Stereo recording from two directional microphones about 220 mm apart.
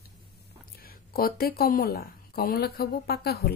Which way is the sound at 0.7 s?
40° left (ahead or behind).